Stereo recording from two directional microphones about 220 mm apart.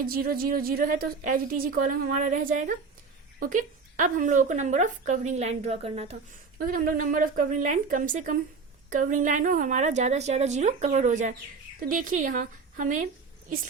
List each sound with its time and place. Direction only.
0.0 s speech: 40° right (ahead or behind)
6.6 s speech: 40° right (ahead or behind)